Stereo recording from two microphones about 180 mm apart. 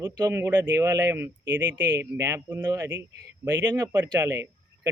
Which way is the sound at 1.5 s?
80° right.